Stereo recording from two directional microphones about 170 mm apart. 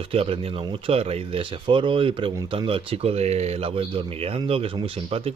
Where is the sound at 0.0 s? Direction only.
35° right (ahead or behind).